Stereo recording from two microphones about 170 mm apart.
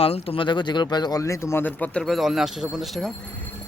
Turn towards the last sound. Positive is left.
turn(degrees=0)  # may be behind; listen again after turning